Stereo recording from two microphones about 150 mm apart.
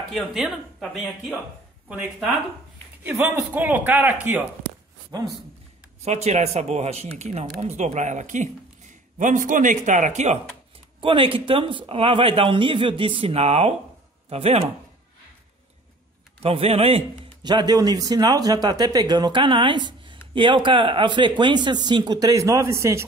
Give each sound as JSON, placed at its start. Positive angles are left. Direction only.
{"t": 0.1, "sound": "speech", "side_deg": 0}
{"t": 1.9, "sound": "a man's voice", "side_deg": -5}
{"t": 6.0, "sound": "speech", "side_deg": -45}
{"t": 11.0, "sound": "speech", "side_deg": -35}
{"t": 16.4, "sound": "speech", "side_deg": -40}
{"t": 17.4, "sound": "speech", "side_deg": -30}